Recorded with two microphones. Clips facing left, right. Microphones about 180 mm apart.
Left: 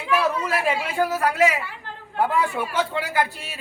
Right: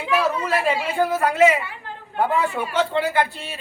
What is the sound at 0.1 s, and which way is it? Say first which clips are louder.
Chatter: right 1 dB; 5° right (ahead or behind).